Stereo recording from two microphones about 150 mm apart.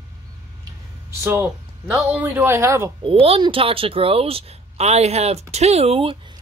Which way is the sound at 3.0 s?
35° right (ahead or behind).